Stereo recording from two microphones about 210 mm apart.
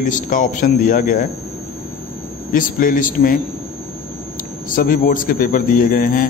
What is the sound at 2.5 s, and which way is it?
Speech, 40° left (ahead or behind).